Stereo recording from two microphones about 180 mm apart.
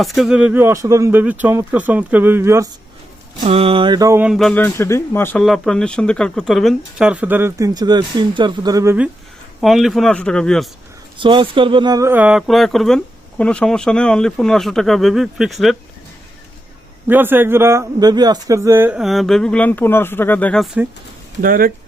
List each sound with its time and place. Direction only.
0.0 s speech: centre (ahead or behind)
3.4 s mantra: 30° right (ahead or behind)
4.2 s speech: centre (ahead or behind)
5.4 s speech: centre (ahead or behind)
9.6 s speech: centre (ahead or behind)
11.2 s speech: 25° right (ahead or behind); by 15.8 s centre (ahead or behind)
17.1 s speech: 10° right (ahead or behind); by 20.7 s 5° left (ahead or behind)
21.4 s speech: 50° right (ahead or behind)